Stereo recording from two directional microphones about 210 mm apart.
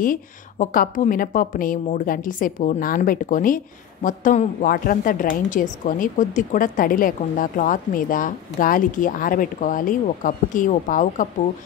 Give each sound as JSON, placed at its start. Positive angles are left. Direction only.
{"t": 0.0, "sound": "a woman's voice", "side_deg": 40}